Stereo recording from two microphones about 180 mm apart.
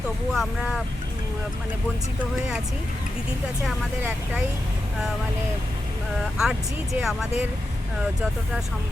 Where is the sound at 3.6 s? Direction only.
10° right (ahead or behind).